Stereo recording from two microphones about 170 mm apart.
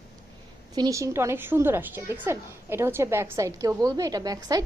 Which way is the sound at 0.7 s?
20° right (ahead or behind).